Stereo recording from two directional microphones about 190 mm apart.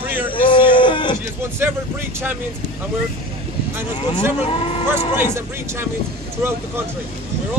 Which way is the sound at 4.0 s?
25° left (ahead or behind).